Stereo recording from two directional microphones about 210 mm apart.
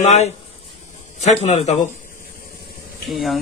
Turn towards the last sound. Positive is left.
turn(degrees=0)  # may be behind; listen again after turning